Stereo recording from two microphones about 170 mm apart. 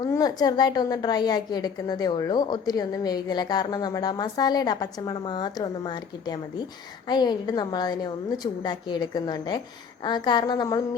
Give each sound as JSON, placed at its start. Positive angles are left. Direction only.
{"t": 0.0, "sound": "a woman's voice", "side_deg": 20}